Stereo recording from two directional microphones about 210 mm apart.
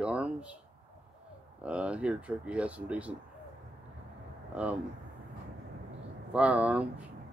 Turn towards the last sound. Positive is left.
turn(degrees=-5)  # may be behind; listen again after turning